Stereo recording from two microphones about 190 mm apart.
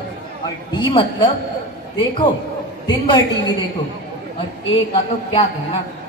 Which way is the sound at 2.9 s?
25° left (ahead or behind).